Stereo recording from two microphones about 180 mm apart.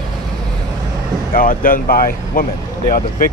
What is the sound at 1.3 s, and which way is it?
Speech, 50° left (ahead or behind).